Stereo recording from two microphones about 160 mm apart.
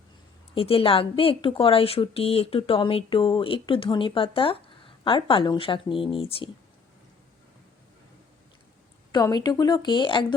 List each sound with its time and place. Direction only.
0.5 s speech: 35° left (ahead or behind)
9.1 s speech: 25° left (ahead or behind)